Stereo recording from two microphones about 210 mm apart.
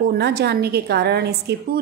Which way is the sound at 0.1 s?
50° right (ahead or behind).